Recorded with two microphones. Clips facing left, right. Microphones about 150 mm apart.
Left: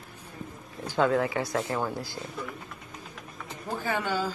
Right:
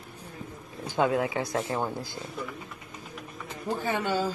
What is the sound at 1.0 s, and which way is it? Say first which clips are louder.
Speech: left 1 dB; 15° right (ahead or behind).